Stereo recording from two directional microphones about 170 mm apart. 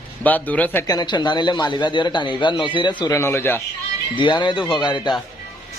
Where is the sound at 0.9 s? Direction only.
25° left (ahead or behind).